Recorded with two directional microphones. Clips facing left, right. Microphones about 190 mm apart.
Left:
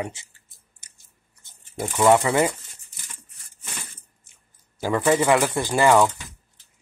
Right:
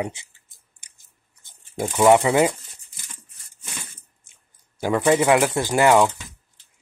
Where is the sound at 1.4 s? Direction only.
15° right (ahead or behind).